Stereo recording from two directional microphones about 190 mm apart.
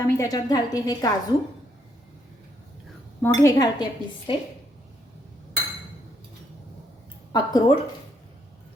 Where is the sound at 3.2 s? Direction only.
15° left (ahead or behind).